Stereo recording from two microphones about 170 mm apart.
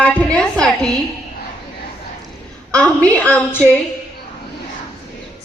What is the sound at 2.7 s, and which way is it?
A woman's voice, 5° left (ahead or behind).